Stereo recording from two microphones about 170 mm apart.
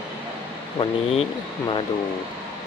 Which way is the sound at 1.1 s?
35° left (ahead or behind).